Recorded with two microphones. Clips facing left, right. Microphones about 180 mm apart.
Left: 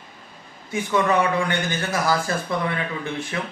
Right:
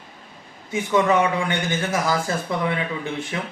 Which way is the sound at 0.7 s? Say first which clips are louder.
Right 2 dB; 20° right (ahead or behind).